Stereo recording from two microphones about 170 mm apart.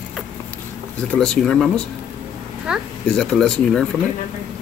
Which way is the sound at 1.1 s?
5° left (ahead or behind).